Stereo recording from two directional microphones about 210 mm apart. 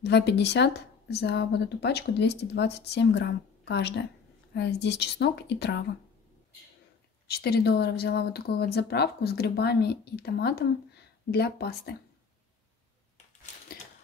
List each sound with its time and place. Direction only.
0.0 s speech: 55° left (ahead or behind)
7.2 s speech: 50° left (ahead or behind)